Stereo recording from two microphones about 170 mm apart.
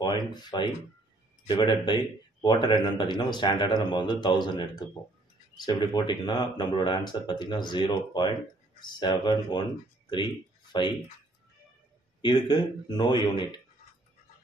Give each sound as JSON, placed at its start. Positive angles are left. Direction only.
{"t": 0.0, "sound": "a man's voice", "side_deg": 25}
{"t": 12.2, "sound": "a man's voice", "side_deg": 25}